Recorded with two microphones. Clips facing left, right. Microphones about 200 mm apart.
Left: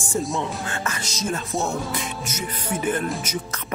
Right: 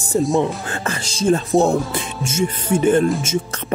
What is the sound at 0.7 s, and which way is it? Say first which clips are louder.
Speech: right 4 dB; 30° right (ahead or behind).